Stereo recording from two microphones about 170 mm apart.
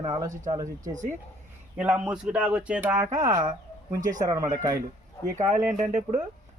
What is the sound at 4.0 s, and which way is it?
Speech, 50° right (ahead or behind).